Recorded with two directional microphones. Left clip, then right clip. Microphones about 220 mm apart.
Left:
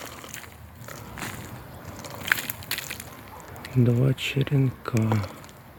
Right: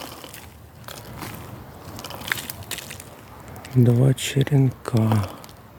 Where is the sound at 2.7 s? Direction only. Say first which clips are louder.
Left 3 dB; 5° right (ahead or behind).